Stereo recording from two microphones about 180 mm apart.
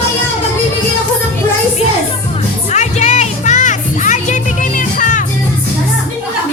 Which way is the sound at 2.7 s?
40° left (ahead or behind).